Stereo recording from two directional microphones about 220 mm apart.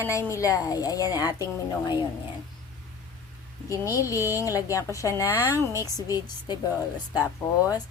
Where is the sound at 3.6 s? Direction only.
15° left (ahead or behind).